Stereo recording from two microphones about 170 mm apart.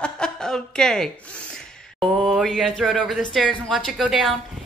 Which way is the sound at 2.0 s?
Centre (ahead or behind).